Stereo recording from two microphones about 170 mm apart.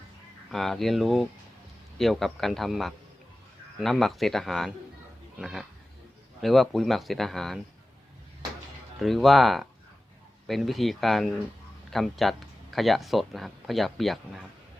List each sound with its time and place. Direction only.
0.5 s speech: centre (ahead or behind)
9.0 s speech: centre (ahead or behind)